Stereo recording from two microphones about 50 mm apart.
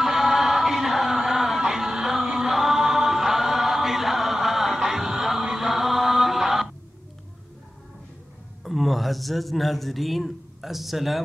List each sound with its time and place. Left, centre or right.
0.0 s music: centre
2.2 s chant: centre
5.7 s mantra: centre
8.6 s a man's voice: centre